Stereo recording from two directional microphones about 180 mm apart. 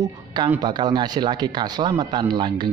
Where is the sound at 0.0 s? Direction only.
25° right (ahead or behind).